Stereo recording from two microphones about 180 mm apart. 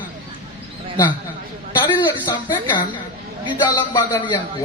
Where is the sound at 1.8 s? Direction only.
25° left (ahead or behind).